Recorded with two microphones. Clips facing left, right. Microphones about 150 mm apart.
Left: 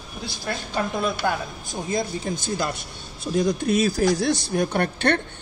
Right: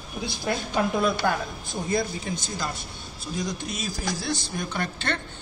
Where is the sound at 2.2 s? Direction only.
55° left (ahead or behind).